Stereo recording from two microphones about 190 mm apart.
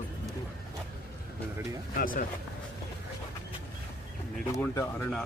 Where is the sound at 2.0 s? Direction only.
45° left (ahead or behind).